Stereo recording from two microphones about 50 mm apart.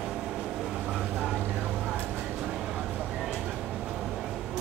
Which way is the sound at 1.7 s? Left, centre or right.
Centre.